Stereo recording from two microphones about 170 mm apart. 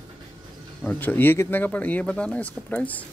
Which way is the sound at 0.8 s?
10° left (ahead or behind).